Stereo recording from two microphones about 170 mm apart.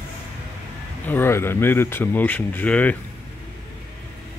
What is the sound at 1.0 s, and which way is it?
Speech, 10° left (ahead or behind).